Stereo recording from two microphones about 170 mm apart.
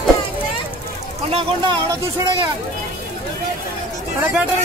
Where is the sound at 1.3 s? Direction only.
35° right (ahead or behind).